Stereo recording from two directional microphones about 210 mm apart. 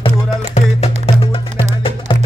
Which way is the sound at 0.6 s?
30° left (ahead or behind).